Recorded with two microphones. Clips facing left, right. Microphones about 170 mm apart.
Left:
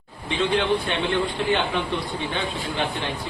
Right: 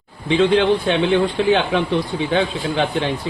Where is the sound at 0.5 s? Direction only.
90° right.